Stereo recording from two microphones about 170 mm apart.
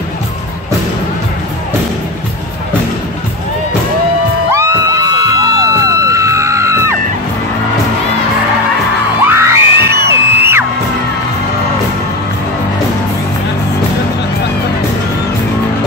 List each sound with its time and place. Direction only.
4.6 s music: 15° right (ahead or behind)
9.3 s music: 15° right (ahead or behind)